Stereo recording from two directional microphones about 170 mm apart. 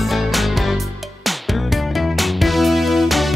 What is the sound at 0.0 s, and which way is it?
Music, centre (ahead or behind).